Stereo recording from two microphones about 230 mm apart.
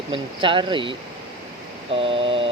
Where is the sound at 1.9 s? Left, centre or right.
Right.